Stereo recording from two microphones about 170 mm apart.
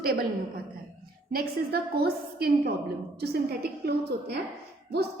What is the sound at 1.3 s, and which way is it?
A woman's voice, 65° right (ahead or behind).